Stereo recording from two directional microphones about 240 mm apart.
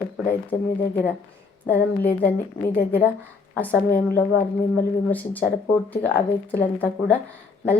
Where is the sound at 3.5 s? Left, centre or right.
Centre.